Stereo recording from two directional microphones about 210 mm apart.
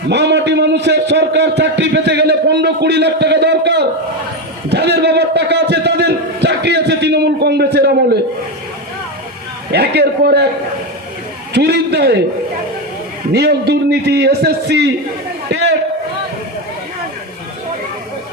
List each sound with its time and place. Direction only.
0.1 s a sound: 55° right (ahead or behind)
9.7 s a man's voice: 50° right (ahead or behind)
11.5 s a man's voice: 50° right (ahead or behind)
13.3 s a man's voice: 50° right (ahead or behind)